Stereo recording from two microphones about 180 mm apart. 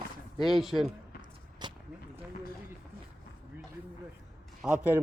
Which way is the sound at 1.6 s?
25° right (ahead or behind).